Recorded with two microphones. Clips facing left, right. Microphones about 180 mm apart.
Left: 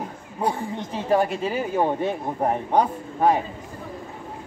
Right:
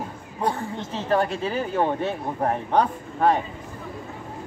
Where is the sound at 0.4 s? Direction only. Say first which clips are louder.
Left 1 dB; 10° left (ahead or behind).